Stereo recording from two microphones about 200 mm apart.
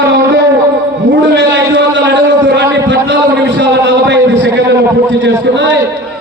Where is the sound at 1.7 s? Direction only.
65° right (ahead or behind).